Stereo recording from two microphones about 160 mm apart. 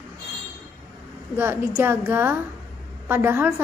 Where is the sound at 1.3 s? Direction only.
15° right (ahead or behind).